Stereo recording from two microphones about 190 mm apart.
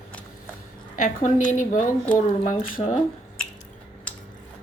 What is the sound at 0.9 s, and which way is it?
A woman's voice, 40° left (ahead or behind).